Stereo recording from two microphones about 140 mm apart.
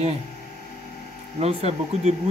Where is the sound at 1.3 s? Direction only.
50° right (ahead or behind).